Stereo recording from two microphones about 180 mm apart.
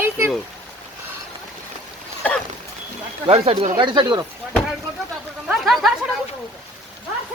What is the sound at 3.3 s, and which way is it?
Speech, 35° right (ahead or behind).